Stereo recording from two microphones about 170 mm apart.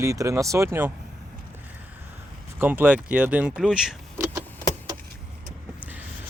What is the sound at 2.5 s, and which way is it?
Speech, 10° right (ahead or behind).